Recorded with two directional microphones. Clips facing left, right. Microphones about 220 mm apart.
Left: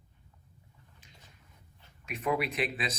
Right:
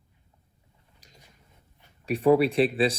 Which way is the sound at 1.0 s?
40° right (ahead or behind).